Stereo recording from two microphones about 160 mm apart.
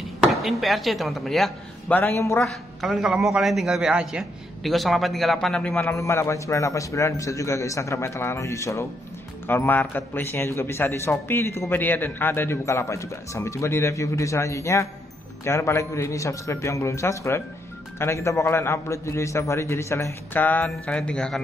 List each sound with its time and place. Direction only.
0.2 s speech: centre (ahead or behind)
2.0 s a man's voice: 15° left (ahead or behind)
2.4 s a man's voice: centre (ahead or behind)